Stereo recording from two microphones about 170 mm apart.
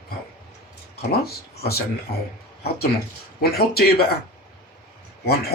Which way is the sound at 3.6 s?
65° left (ahead or behind).